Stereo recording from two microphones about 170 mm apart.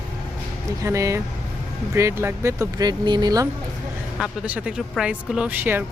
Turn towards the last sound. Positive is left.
turn(degrees=-10)  # may be behind; listen again after turning